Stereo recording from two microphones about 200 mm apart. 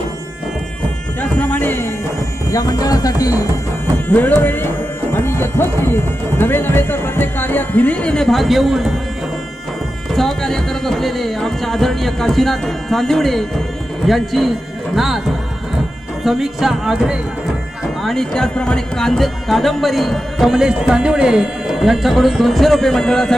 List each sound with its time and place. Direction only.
1.2 s music: 10° left (ahead or behind)
4.1 s speech: 10° left (ahead or behind)
10.1 s speech: centre (ahead or behind)
16.2 s speech: centre (ahead or behind)